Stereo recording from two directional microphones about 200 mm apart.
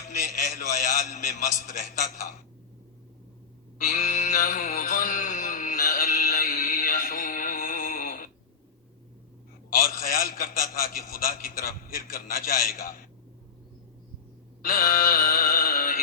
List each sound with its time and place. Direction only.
0.1 s a man's voice: 40° left (ahead or behind)
3.8 s mantra: 40° left (ahead or behind)
9.7 s a man's voice: 45° left (ahead or behind)
14.6 s a man's voice: 45° left (ahead or behind)